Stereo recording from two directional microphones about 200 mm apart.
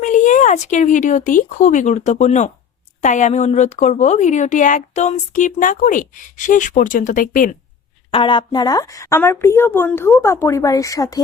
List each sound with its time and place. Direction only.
0.0 s speech: 40° left (ahead or behind)
8.1 s a woman's voice: 25° left (ahead or behind)